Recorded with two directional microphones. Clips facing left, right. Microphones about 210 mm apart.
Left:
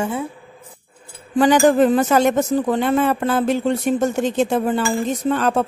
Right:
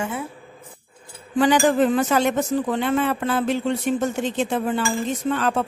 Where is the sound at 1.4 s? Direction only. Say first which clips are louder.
Left 4 dB; 45° left (ahead or behind).